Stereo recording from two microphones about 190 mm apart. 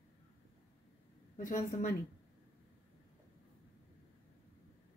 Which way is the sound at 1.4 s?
45° left (ahead or behind).